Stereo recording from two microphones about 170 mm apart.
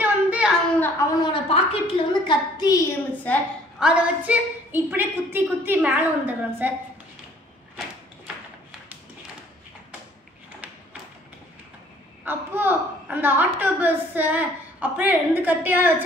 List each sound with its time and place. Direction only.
0.0 s a sound: 5° right (ahead or behind)
0.7 s a sound: 10° left (ahead or behind)
1.2 s a woman's voice: 30° left (ahead or behind)
3.3 s a woman's voice: 10° left (ahead or behind)
3.8 s a woman's voice: 10° right (ahead or behind)
12.3 s a woman's voice: 10° right (ahead or behind)